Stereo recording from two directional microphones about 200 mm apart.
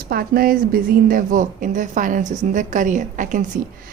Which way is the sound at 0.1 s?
50° right (ahead or behind).